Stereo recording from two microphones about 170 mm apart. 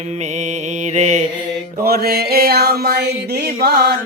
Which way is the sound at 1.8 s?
65° right (ahead or behind).